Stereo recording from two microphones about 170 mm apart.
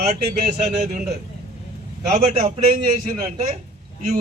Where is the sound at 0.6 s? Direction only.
50° right (ahead or behind).